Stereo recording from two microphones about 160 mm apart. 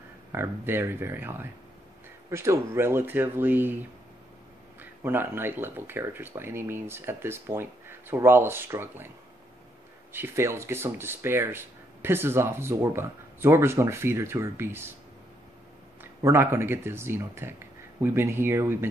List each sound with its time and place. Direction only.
0.3 s speech: 15° right (ahead or behind)
5.0 s speech: 15° right (ahead or behind)
10.1 s speech: 15° right (ahead or behind)
16.0 s speech: 15° right (ahead or behind)